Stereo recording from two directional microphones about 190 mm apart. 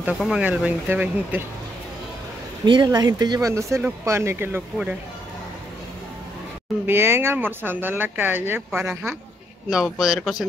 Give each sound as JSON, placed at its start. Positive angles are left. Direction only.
{"t": 0.0, "sound": "speech", "side_deg": -5}
{"t": 2.6, "sound": "speech", "side_deg": -25}
{"t": 6.9, "sound": "speech", "side_deg": -10}